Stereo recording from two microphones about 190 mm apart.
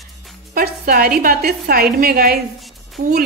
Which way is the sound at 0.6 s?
50° right (ahead or behind).